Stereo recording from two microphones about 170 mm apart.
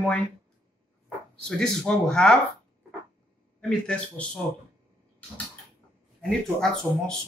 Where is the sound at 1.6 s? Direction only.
5° left (ahead or behind).